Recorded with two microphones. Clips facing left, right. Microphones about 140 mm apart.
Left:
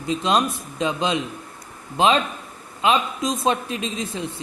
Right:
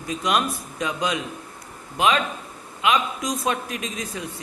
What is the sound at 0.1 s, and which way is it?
A woman's voice, 25° left (ahead or behind).